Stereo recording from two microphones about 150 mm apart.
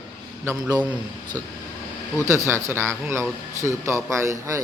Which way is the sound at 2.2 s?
20° right (ahead or behind).